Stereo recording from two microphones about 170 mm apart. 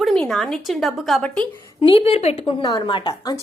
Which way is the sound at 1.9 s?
35° left (ahead or behind).